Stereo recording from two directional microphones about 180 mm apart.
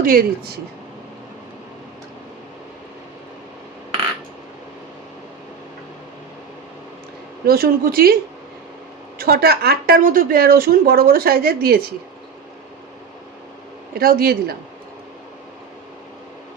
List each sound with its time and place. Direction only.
0.0 s speech: 55° right (ahead or behind)
7.4 s a woman's voice: 55° right (ahead or behind)
9.1 s a woman's voice: 55° right (ahead or behind)
14.0 s a woman's voice: 55° right (ahead or behind)